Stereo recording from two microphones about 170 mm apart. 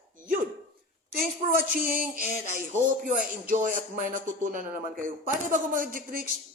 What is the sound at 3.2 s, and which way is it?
Speech, 50° right (ahead or behind).